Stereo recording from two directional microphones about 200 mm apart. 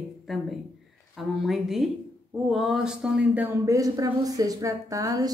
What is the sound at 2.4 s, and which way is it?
Speech, centre (ahead or behind).